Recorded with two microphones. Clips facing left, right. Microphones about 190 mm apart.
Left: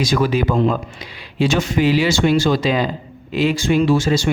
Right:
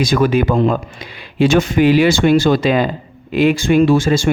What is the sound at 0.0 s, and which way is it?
A man's voice, 55° right (ahead or behind).